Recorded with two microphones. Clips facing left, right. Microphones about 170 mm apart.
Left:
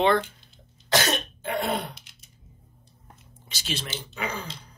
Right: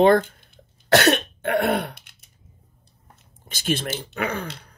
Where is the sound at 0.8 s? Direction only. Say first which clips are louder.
Right 7 dB; 65° right (ahead or behind).